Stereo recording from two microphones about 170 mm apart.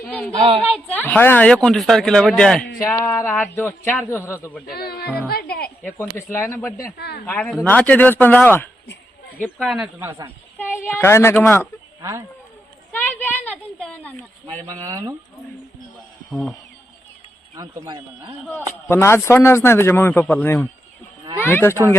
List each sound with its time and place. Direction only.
0.0 s a woman's voice: 5° left (ahead or behind)
4.7 s speech: 65° left (ahead or behind)
5.3 s music: 65° left (ahead or behind)
5.8 s a man's voice: 10° left (ahead or behind); by 10.2 s 10° right (ahead or behind)
10.8 s a man's voice: 15° left (ahead or behind)
12.9 s a sound: 10° left (ahead or behind)
14.7 s speech: 20° right (ahead or behind)
16.3 s a woman's voice: centre (ahead or behind)
17.5 s speech: 20° right (ahead or behind)
18.9 s a man's voice: 15° left (ahead or behind)